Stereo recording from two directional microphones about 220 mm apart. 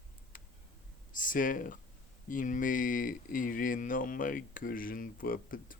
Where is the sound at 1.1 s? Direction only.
35° left (ahead or behind).